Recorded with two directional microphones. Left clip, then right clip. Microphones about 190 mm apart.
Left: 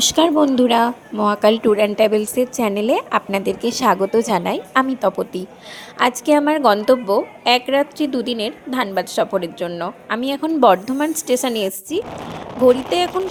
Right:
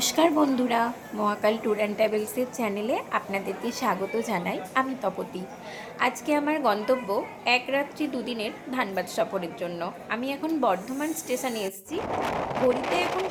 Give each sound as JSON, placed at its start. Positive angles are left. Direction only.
{"t": 0.0, "sound": "a woman's voice", "side_deg": 35}